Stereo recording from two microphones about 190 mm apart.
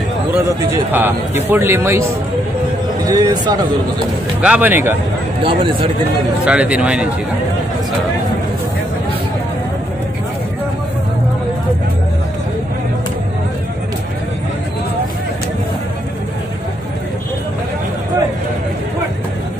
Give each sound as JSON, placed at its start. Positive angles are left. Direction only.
{"t": 0.3, "sound": "a man's voice", "side_deg": -10}
{"t": 3.1, "sound": "a man's voice", "side_deg": -20}
{"t": 4.4, "sound": "a man's voice", "side_deg": -5}
{"t": 5.4, "sound": "a man's voice", "side_deg": -25}
{"t": 6.4, "sound": "a man's voice", "side_deg": -5}